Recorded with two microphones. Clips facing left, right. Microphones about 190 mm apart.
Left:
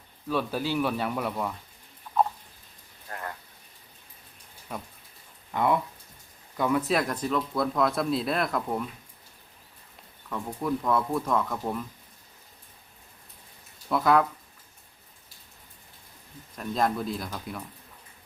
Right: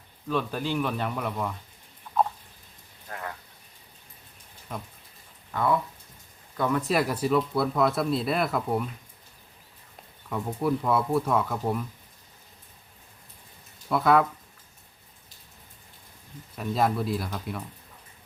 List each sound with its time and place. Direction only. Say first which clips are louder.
0.3 s speech: even; 5° left (ahead or behind)
3.1 s a sound: right 1 dB; centre (ahead or behind)
5.5 s speech: left 1 dB; 20° left (ahead or behind)
6.6 s speech: even; 5° left (ahead or behind)
10.2 s speech: right 3 dB; 10° right (ahead or behind)
13.9 s speech: right 1 dB; centre (ahead or behind)
16.6 s speech: right 1 dB; 5° right (ahead or behind)